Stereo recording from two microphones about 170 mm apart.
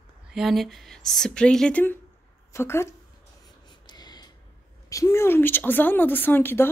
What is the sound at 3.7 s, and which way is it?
Snort, 25° left (ahead or behind).